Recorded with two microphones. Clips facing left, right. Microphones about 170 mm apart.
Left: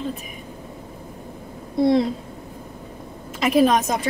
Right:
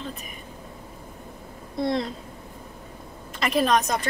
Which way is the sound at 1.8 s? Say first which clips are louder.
Left 8 dB; 5° left (ahead or behind).